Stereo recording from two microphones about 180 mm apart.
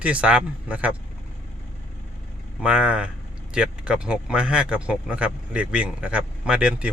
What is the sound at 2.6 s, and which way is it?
Speech, 5° right (ahead or behind).